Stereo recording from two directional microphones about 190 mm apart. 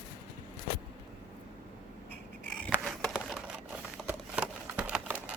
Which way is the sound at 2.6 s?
5° left (ahead or behind).